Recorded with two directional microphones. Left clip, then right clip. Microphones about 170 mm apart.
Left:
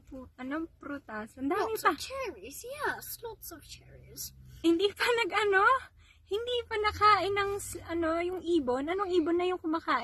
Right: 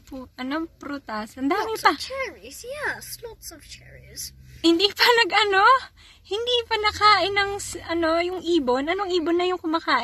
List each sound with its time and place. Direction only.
0.4 s a woman's voice: 30° right (ahead or behind)
2.1 s speech: 60° left (ahead or behind)
4.6 s a woman's voice: 30° right (ahead or behind)